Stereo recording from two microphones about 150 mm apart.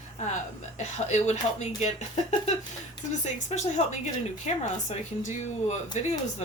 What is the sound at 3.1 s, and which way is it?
A woman's voice, 50° left (ahead or behind).